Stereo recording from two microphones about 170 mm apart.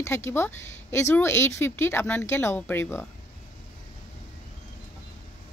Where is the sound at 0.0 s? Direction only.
15° left (ahead or behind).